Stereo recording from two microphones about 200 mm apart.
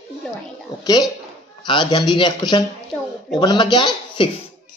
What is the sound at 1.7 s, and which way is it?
Speech, 20° left (ahead or behind).